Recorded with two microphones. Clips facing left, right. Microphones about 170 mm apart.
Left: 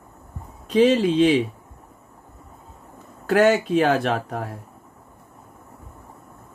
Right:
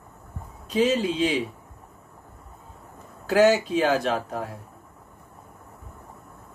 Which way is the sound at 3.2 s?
55° left (ahead or behind).